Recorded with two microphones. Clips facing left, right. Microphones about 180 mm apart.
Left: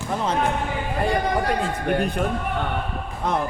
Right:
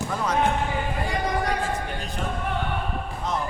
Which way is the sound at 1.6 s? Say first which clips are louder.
Left 7 dB; 60° left (ahead or behind).